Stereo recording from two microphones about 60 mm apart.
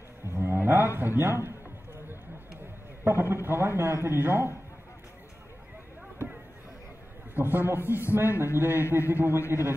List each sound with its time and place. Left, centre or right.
0.2 s a sound: right
3.0 s a man's voice: right
7.3 s a man's voice: right